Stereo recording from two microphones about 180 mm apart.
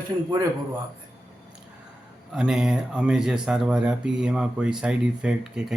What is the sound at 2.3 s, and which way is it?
Speech, 5° right (ahead or behind).